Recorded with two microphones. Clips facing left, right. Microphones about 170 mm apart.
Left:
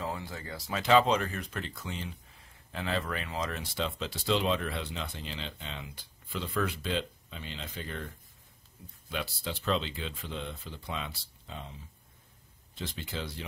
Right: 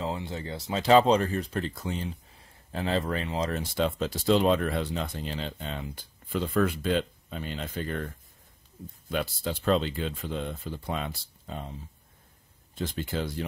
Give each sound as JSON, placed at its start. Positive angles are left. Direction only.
{"t": 0.0, "sound": "speech", "side_deg": -25}
{"t": 0.8, "sound": "speech", "side_deg": -35}
{"t": 3.7, "sound": "speech", "side_deg": -50}
{"t": 9.1, "sound": "speech", "side_deg": -45}
{"t": 12.7, "sound": "speech", "side_deg": -50}